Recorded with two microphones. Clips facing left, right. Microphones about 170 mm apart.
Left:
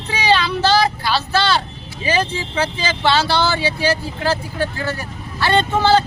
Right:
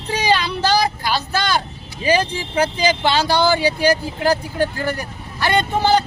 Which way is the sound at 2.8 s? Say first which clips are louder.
Left 2 dB; 15° right (ahead or behind).